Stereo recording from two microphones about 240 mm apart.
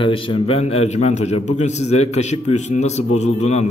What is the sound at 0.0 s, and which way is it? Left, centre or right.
A man's voice, left.